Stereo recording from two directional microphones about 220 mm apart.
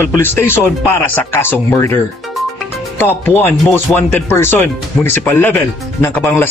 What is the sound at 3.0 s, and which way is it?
Speech, 10° left (ahead or behind).